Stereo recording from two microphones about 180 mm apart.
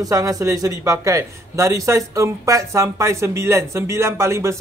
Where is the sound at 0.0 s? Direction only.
20° right (ahead or behind).